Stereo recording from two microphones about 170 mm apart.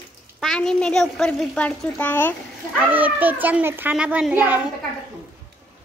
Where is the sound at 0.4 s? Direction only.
5° left (ahead or behind).